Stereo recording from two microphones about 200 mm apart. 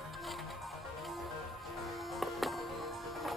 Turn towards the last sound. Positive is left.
turn(degrees=0)  # may be behind; listen again after turning